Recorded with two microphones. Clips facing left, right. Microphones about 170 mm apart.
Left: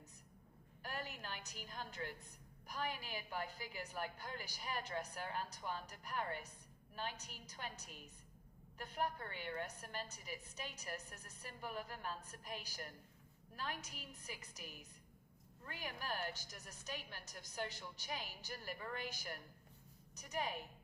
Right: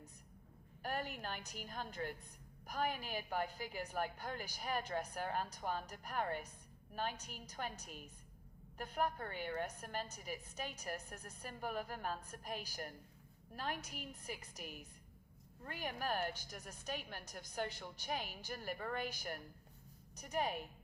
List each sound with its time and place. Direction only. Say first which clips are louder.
0.8 s a woman's voice: right 5 dB; 50° right (ahead or behind)